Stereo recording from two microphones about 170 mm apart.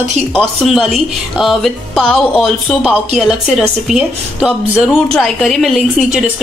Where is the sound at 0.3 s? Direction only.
5° left (ahead or behind).